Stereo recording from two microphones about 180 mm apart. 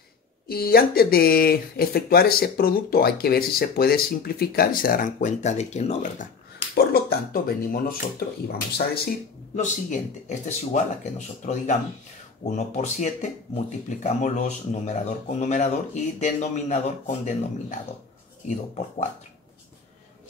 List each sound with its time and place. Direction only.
0.5 s speech: 60° left (ahead or behind); by 6.2 s 40° left (ahead or behind)
6.7 s speech: 55° left (ahead or behind)
9.6 s speech: 45° left (ahead or behind)